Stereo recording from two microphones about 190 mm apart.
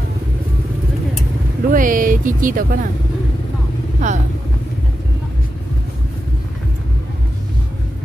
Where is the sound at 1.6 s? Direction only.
45° right (ahead or behind).